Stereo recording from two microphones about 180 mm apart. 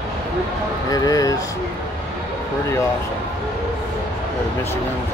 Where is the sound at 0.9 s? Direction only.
20° left (ahead or behind).